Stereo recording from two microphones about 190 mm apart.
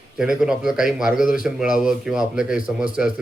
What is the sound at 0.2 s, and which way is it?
Speech, 5° right (ahead or behind).